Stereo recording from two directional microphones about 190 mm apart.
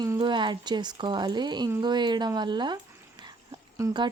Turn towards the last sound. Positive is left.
turn(degrees=-25)  # may be behind; listen again after turning